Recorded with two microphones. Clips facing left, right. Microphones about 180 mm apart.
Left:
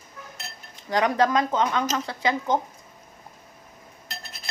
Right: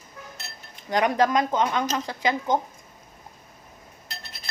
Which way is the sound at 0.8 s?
15° right (ahead or behind).